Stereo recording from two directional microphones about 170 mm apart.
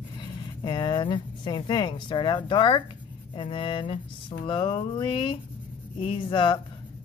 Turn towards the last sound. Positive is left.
turn(degrees=30)  # may be behind; listen again after turning